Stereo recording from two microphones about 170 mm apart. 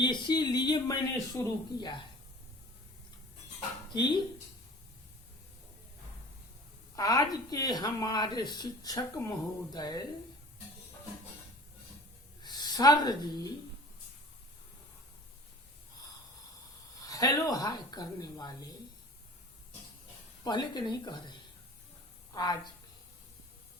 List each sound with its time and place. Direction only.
0.0 s speech: 25° left (ahead or behind)
3.9 s speech: 25° left (ahead or behind)
6.9 s speech: 20° left (ahead or behind)
12.4 s speech: 25° left (ahead or behind)
17.1 s speech: 20° left (ahead or behind)
20.4 s speech: 25° left (ahead or behind)
22.4 s speech: 25° left (ahead or behind)